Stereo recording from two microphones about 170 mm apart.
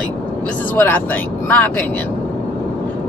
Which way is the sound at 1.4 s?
10° left (ahead or behind).